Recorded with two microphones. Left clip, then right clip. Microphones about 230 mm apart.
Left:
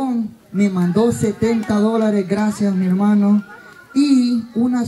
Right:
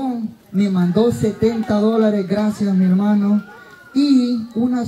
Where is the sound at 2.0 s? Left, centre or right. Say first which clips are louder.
Right 1 dB; left.